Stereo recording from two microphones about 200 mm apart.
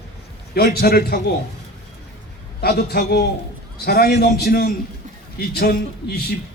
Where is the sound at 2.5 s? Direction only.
50° left (ahead or behind).